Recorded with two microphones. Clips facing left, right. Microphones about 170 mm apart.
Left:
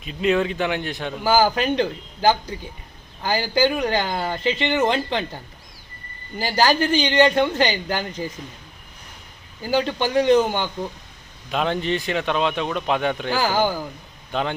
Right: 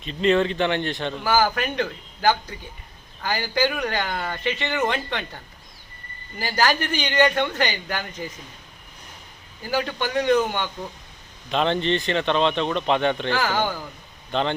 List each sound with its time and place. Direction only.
0.0 s a man's voice: 5° left (ahead or behind)
1.2 s speech: 30° left (ahead or behind)
6.4 s speech: 30° left (ahead or behind)
9.6 s speech: 30° left (ahead or behind)
11.5 s a man's voice: 5° left (ahead or behind)